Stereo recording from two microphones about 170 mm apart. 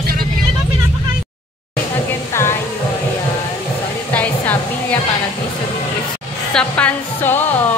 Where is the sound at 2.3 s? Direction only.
15° left (ahead or behind).